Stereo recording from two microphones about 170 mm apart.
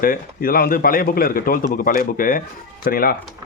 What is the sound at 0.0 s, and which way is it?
A man's voice, 55° left (ahead or behind).